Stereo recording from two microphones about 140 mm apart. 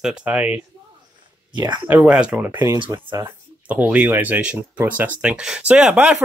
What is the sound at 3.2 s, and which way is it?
Speech, 10° right (ahead or behind).